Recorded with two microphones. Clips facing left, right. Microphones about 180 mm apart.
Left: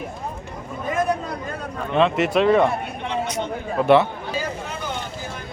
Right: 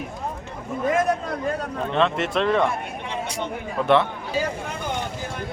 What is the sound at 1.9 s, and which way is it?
Speech, 5° left (ahead or behind).